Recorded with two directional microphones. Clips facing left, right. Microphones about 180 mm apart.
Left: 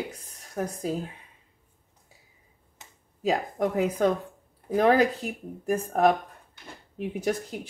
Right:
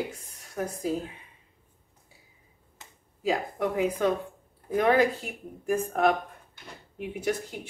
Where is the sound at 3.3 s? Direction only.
40° left (ahead or behind).